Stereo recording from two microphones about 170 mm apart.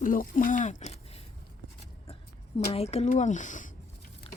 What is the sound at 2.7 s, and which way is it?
Speech, 35° left (ahead or behind).